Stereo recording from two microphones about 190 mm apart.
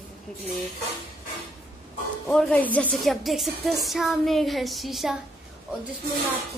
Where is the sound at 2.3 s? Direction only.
5° left (ahead or behind).